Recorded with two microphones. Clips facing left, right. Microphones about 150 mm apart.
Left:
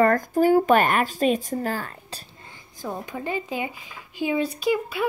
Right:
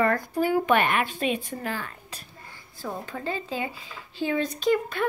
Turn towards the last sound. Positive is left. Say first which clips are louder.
# even
turn(degrees=10)  # may be behind; listen again after turning